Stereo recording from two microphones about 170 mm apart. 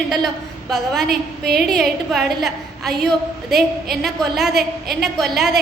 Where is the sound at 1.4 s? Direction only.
70° right (ahead or behind).